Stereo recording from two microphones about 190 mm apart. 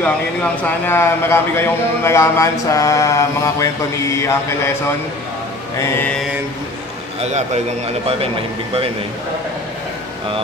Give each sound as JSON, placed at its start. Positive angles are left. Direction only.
{"t": 0.0, "sound": "a man's voice", "side_deg": 10}
{"t": 5.8, "sound": "a man's voice", "side_deg": 10}
{"t": 7.2, "sound": "a man's voice", "side_deg": -35}